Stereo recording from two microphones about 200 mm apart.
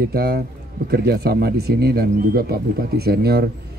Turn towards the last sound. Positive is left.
turn(degrees=-50)  # may be behind; listen again after turning